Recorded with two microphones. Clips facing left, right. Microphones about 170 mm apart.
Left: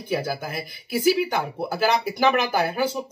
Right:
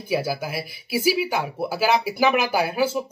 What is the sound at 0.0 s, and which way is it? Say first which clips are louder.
Speech: right 2 dB; 10° right (ahead or behind).